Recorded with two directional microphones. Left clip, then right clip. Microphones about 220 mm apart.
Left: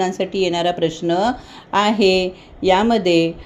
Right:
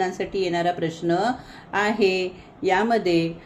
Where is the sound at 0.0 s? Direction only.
30° left (ahead or behind).